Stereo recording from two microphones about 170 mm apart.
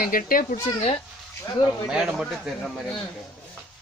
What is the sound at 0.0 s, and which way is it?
Speech, 55° left (ahead or behind).